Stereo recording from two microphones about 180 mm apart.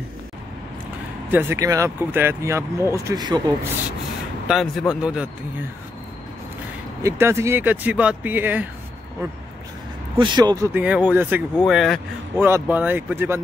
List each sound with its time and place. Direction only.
1.3 s speech: 15° right (ahead or behind)
4.5 s a man's voice: centre (ahead or behind)
7.0 s speech: 15° right (ahead or behind)
10.1 s speech: 25° right (ahead or behind)
10.7 s a man's voice: 10° right (ahead or behind)
12.4 s speech: 10° right (ahead or behind)